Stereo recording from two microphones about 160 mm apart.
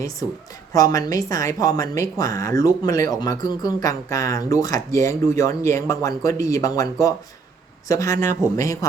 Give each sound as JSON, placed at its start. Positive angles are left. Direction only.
{"t": 0.7, "sound": "speech", "side_deg": 20}